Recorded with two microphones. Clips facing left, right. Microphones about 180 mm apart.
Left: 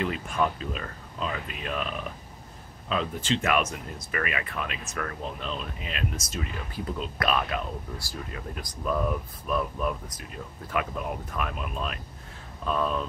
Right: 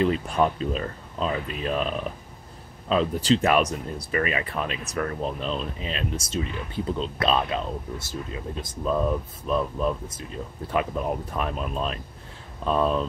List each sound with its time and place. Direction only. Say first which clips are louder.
0.0 s speech: right 5 dB; 35° right (ahead or behind)